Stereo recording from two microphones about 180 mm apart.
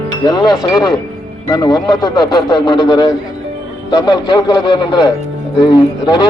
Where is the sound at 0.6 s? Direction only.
25° left (ahead or behind).